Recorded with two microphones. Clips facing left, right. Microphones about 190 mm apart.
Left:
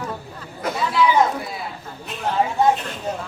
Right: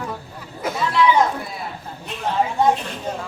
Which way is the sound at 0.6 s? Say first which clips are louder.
Right 1 dB; 5° left (ahead or behind).